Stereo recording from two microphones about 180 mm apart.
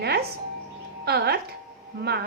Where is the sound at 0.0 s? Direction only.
65° right (ahead or behind).